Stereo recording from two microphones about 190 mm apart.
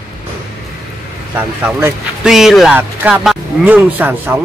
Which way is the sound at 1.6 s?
10° right (ahead or behind).